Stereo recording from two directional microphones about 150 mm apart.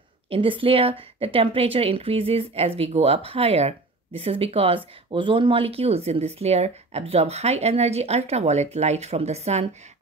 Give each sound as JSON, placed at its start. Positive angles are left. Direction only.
{"t": 0.3, "sound": "a woman's voice", "side_deg": -35}